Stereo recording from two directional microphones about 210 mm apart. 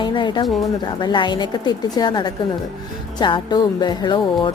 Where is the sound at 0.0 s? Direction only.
20° left (ahead or behind).